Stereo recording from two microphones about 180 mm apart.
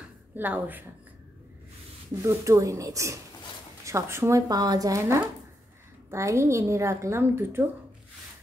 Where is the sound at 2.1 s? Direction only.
15° right (ahead or behind).